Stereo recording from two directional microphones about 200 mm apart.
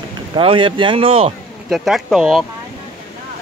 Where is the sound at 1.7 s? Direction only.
Centre (ahead or behind).